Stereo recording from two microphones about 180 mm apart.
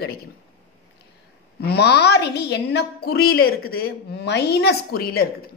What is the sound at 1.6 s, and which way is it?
A woman's voice, 65° left (ahead or behind).